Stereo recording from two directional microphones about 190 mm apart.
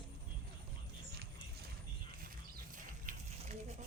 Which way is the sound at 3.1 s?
45° right (ahead or behind).